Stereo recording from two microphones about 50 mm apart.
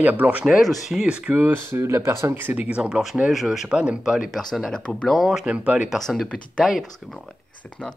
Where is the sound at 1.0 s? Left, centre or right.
Centre.